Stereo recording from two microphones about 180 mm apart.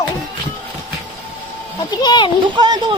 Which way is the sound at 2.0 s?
25° left (ahead or behind).